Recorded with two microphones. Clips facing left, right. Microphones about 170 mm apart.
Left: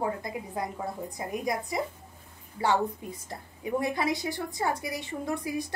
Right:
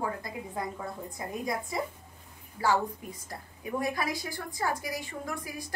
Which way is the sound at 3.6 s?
25° left (ahead or behind).